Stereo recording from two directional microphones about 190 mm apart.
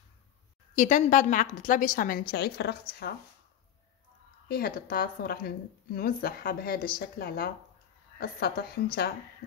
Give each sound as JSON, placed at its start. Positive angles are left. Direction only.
{"t": 0.7, "sound": "a woman's voice", "side_deg": 40}
{"t": 4.5, "sound": "a woman's voice", "side_deg": 50}